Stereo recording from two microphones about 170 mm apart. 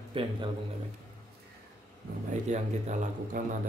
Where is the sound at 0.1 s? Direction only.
30° right (ahead or behind).